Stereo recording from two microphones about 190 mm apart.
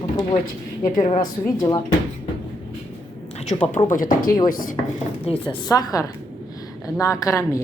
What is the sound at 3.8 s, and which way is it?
Speech, 45° left (ahead or behind).